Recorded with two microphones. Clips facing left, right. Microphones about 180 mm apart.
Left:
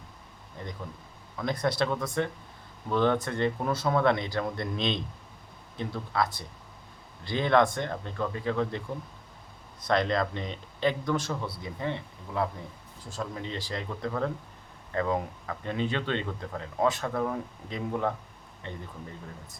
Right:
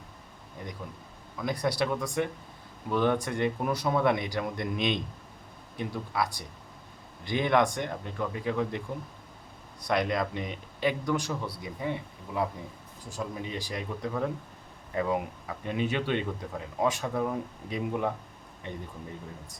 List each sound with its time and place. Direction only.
0.6 s speech: 10° right (ahead or behind)
9.8 s speech: 10° right (ahead or behind)